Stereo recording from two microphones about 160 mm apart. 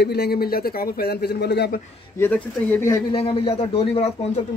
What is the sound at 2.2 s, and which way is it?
Speech, 10° left (ahead or behind).